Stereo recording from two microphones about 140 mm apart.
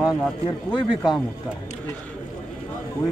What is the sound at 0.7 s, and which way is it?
Speech, 30° left (ahead or behind).